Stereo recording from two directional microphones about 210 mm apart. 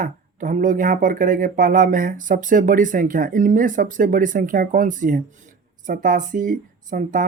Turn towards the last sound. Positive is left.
turn(degrees=-40)  # may be behind; listen again after turning